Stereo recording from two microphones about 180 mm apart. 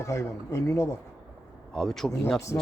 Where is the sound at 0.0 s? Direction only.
15° left (ahead or behind).